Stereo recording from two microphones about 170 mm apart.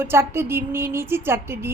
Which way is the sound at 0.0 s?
15° right (ahead or behind).